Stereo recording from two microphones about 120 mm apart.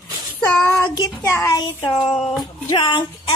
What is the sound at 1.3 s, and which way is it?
Speech, 25° left (ahead or behind).